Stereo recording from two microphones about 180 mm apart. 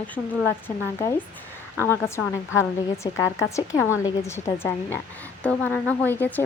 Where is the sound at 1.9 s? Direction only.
15° left (ahead or behind).